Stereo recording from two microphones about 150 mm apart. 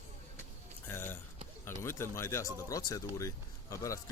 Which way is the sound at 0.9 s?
15° left (ahead or behind).